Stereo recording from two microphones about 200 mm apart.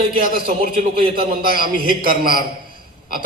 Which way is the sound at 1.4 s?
50° right (ahead or behind).